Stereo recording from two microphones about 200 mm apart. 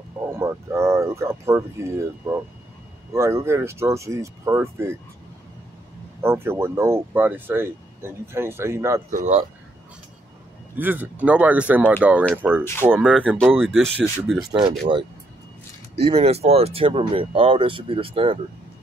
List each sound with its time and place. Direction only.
0.3 s speech: 15° right (ahead or behind)
6.2 s speech: 10° right (ahead or behind)
9.1 s speech: 35° right (ahead or behind)
10.8 s speech: 10° right (ahead or behind)
16.0 s speech: 30° right (ahead or behind)